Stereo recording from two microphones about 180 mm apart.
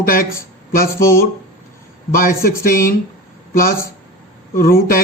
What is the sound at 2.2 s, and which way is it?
Speech, 55° left (ahead or behind).